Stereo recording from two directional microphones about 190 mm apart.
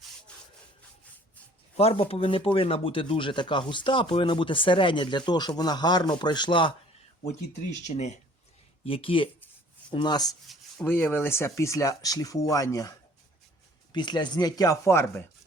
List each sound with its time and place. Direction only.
1.7 s speech: 30° left (ahead or behind)
7.9 s speech: 35° left (ahead or behind); by 10.3 s 20° left (ahead or behind)
10.4 s speech: centre (ahead or behind); by 12.9 s 20° left (ahead or behind)
13.9 s speech: 25° left (ahead or behind)